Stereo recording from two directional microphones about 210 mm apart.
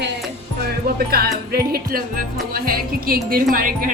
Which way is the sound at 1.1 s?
45° right (ahead or behind).